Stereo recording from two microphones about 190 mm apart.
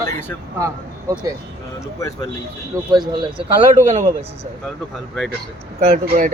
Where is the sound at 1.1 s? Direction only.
15° right (ahead or behind).